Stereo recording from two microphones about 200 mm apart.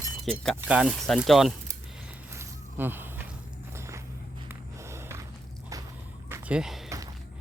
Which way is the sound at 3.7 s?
15° right (ahead or behind).